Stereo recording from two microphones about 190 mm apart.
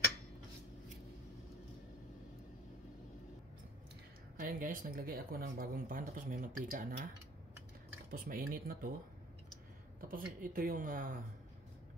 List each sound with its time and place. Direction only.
4.4 s speech: 45° right (ahead or behind)
8.1 s speech: 50° right (ahead or behind)
9.9 s speech: 50° right (ahead or behind)